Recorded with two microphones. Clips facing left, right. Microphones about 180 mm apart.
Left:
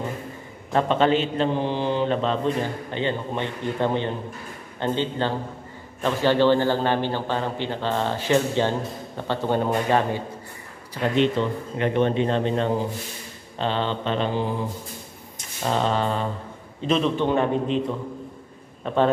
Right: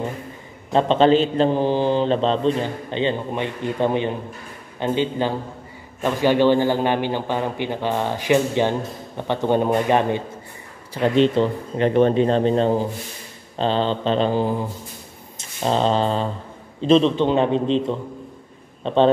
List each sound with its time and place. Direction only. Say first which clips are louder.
0.7 s a man's voice: right 4 dB; 25° right (ahead or behind)
11.0 s speech: right 4 dB; 30° right (ahead or behind)
15.3 s a sound: right 4 dB; 30° right (ahead or behind)
16.8 s a man's voice: right 6 dB; 30° right (ahead or behind)
18.8 s a man's voice: right 4 dB; 25° right (ahead or behind)